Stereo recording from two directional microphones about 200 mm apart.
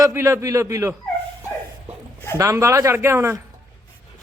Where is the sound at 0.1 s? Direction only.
15° right (ahead or behind).